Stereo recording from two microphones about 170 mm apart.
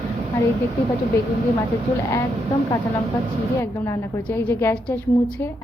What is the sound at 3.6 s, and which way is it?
A woman's voice, 15° left (ahead or behind).